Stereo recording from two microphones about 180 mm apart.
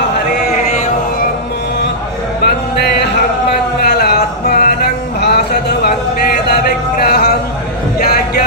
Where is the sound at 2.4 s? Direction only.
65° left (ahead or behind).